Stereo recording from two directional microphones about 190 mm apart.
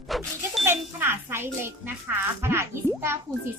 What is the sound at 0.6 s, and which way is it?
A child's voice, 10° right (ahead or behind).